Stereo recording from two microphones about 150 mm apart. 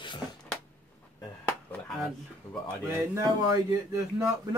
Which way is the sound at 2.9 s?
20° right (ahead or behind).